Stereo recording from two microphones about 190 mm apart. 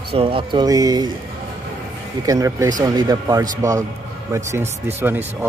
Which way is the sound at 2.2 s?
15° right (ahead or behind).